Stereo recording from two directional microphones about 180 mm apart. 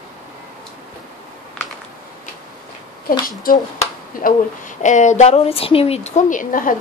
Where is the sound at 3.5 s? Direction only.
50° left (ahead or behind).